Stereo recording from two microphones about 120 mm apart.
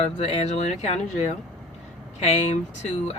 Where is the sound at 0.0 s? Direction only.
65° left (ahead or behind).